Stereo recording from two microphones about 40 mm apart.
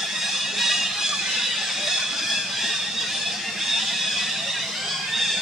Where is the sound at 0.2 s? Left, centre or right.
Centre.